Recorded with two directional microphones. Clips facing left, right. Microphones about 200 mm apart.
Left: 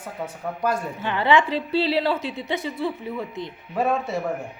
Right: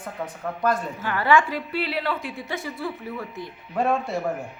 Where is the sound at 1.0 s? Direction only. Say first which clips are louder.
Left 1 dB; 20° left (ahead or behind).